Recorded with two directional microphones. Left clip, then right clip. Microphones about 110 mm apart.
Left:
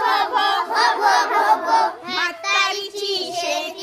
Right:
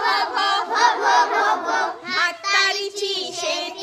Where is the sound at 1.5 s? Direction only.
35° left (ahead or behind).